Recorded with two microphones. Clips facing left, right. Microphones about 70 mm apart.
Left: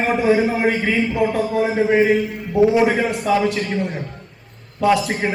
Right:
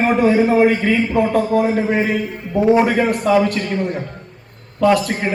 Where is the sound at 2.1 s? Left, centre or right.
Right.